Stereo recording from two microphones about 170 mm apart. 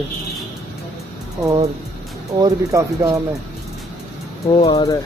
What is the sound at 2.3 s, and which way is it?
Speech, 20° right (ahead or behind).